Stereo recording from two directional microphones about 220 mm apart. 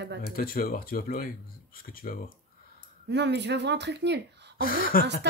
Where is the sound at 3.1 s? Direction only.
50° right (ahead or behind).